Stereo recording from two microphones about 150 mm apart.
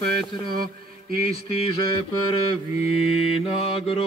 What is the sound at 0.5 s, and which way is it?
Mantra, 75° right (ahead or behind).